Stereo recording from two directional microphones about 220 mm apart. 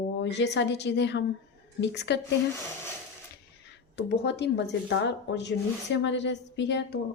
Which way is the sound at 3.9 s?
50° left (ahead or behind).